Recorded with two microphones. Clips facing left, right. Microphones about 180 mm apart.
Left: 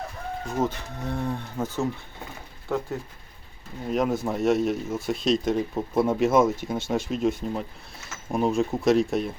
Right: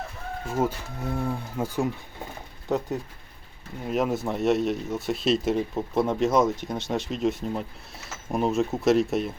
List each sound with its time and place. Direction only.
0.4 s speech: 10° right (ahead or behind)
3.8 s speech: centre (ahead or behind)